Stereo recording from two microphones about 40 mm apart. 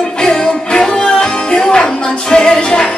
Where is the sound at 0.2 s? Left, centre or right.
Centre.